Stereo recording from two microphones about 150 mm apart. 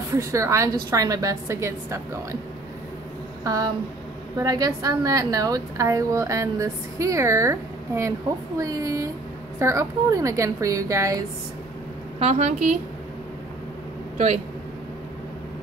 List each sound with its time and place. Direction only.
0.1 s a woman's voice: 20° right (ahead or behind)
3.4 s a woman's voice: 25° right (ahead or behind)
12.2 s a woman's voice: 45° right (ahead or behind)
14.1 s speech: 50° right (ahead or behind)